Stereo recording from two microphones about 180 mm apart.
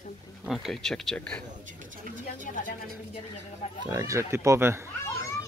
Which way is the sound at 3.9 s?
15° right (ahead or behind).